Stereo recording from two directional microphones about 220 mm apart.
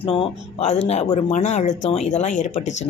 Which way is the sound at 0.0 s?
25° left (ahead or behind).